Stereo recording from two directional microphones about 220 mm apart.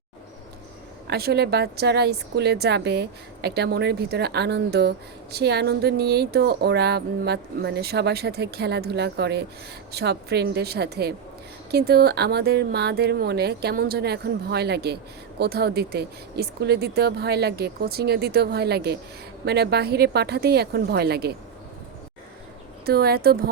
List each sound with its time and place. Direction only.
1.0 s speech: 45° right (ahead or behind)
22.9 s speech: 45° right (ahead or behind)